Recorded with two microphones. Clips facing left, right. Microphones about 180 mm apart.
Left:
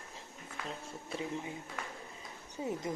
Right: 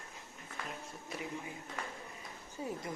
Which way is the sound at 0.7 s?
25° left (ahead or behind).